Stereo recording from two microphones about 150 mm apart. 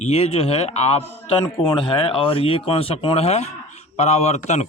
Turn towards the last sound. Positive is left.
turn(degrees=45)  # may be behind; listen again after turning